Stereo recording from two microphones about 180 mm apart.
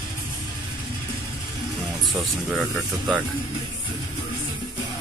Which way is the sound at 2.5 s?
5° right (ahead or behind).